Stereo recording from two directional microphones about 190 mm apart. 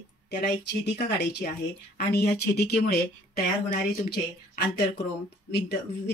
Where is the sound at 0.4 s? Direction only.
55° left (ahead or behind).